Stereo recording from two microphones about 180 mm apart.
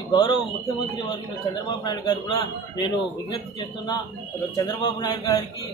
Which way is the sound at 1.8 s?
25° left (ahead or behind).